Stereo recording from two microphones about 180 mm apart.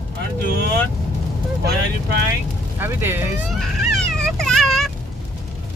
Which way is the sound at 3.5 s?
Centre (ahead or behind).